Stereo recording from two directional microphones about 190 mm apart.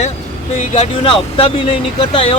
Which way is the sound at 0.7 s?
35° left (ahead or behind).